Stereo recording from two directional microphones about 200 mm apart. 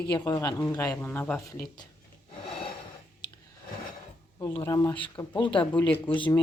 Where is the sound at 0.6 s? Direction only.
5° left (ahead or behind).